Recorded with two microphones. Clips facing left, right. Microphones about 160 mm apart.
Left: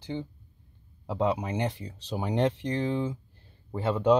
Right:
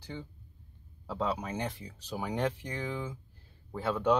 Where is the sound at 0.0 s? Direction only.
20° left (ahead or behind).